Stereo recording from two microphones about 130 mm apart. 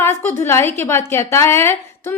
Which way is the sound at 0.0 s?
20° left (ahead or behind).